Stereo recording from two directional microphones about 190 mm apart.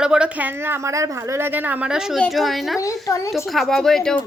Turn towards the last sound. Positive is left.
turn(degrees=0)  # may be behind; listen again after turning